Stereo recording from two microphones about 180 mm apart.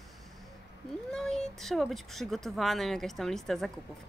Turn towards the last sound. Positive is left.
turn(degrees=0)  # may be behind; listen again after turning